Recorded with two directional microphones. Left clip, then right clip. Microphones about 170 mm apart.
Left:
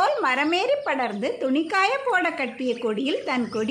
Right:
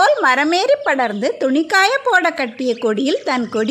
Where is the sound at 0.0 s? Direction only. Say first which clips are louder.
Right 8 dB; 30° right (ahead or behind).